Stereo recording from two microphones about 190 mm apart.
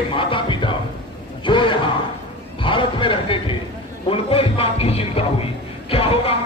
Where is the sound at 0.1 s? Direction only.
25° left (ahead or behind).